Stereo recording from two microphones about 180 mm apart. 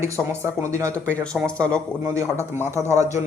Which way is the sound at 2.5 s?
15° right (ahead or behind).